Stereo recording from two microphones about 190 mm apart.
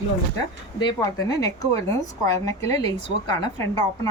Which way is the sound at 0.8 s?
20° left (ahead or behind).